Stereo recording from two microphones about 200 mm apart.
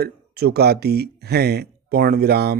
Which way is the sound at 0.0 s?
50° right (ahead or behind).